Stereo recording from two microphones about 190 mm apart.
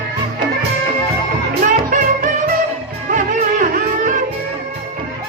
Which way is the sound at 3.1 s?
40° right (ahead or behind).